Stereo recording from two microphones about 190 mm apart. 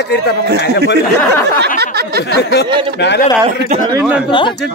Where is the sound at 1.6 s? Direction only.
55° right (ahead or behind).